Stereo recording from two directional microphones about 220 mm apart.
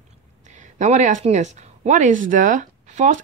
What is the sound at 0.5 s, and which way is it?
A woman's voice, 35° right (ahead or behind).